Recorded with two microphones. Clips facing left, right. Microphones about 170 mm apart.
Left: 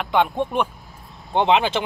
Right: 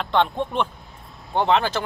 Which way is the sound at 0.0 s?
10° left (ahead or behind).